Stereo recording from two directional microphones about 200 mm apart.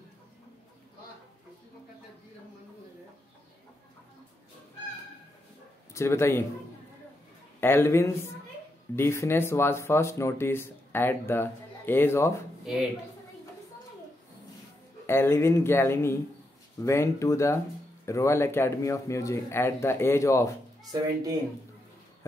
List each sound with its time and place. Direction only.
5.9 s speech: 15° left (ahead or behind)
7.6 s speech: 10° left (ahead or behind)
15.0 s speech: 10° left (ahead or behind)
20.8 s speech: 20° right (ahead or behind)